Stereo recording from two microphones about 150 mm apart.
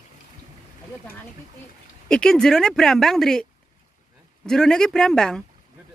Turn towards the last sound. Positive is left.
turn(degrees=5)  # may be behind; listen again after turning